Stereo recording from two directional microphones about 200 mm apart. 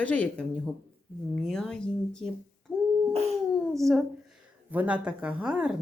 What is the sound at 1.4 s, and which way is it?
Speech, centre (ahead or behind).